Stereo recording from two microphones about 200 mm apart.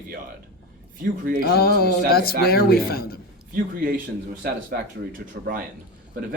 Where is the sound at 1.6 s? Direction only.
50° left (ahead or behind).